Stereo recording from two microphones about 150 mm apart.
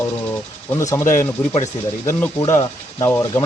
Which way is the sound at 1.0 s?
60° left (ahead or behind).